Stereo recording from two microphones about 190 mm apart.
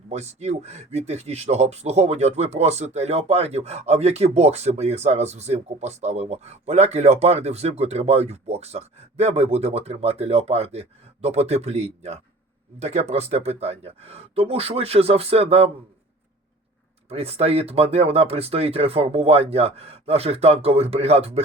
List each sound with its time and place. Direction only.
0.1 s speech: 35° right (ahead or behind)
17.1 s speech: 30° right (ahead or behind)